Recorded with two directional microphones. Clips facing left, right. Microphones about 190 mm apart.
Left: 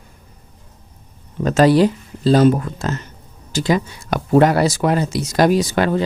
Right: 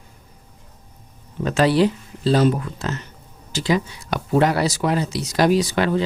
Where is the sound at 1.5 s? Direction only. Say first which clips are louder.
Left 4 dB; 45° left (ahead or behind).